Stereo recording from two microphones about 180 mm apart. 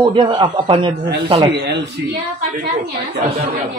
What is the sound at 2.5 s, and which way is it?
Speech, 50° right (ahead or behind).